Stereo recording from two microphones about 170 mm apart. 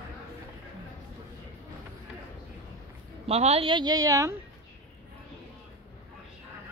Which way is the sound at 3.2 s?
40° right (ahead or behind).